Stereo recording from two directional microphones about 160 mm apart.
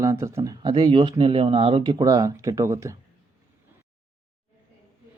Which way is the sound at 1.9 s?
20° right (ahead or behind).